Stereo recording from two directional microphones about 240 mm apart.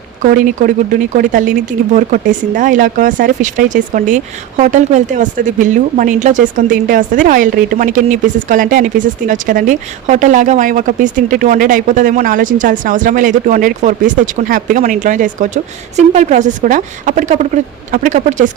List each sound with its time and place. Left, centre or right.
0.2 s speech: right